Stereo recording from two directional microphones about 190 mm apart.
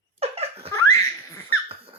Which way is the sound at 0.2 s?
35° right (ahead or behind).